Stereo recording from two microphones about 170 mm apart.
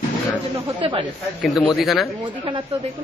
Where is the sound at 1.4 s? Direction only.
Centre (ahead or behind).